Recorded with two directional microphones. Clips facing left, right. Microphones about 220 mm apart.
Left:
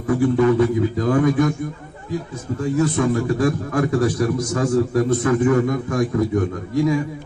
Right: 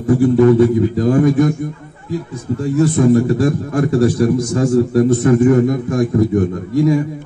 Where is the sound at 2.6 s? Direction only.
30° right (ahead or behind).